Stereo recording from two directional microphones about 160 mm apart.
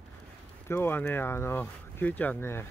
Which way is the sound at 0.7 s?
15° left (ahead or behind).